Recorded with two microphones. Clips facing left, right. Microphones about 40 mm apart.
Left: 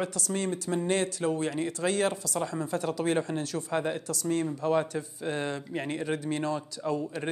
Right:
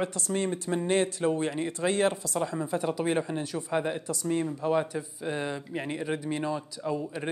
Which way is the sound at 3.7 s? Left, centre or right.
Centre.